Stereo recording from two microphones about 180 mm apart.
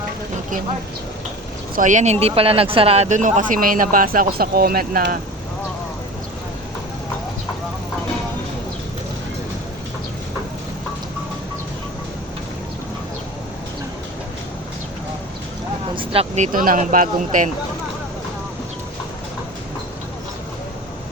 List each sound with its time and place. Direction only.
1.7 s speech: 45° right (ahead or behind)
16.0 s speech: 35° right (ahead or behind)